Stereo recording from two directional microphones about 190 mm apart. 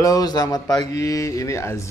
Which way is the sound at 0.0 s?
20° left (ahead or behind).